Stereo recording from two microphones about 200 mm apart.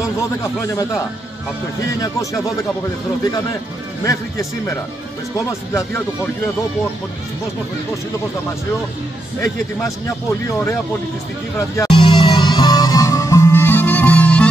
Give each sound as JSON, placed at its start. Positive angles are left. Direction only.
{"t": 0.4, "sound": "speech", "side_deg": 15}
{"t": 4.0, "sound": "speech", "side_deg": 15}
{"t": 9.4, "sound": "speech", "side_deg": 15}
{"t": 11.7, "sound": "music", "side_deg": 20}